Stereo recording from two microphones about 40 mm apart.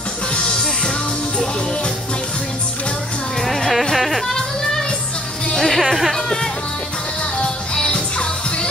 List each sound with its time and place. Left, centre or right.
3.4 s music: centre
3.9 s goat: centre
5.6 s music: centre
5.9 s speech: centre
6.1 s music: centre
7.7 s music: left